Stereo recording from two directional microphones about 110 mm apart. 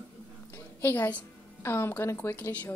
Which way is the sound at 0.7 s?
20° left (ahead or behind).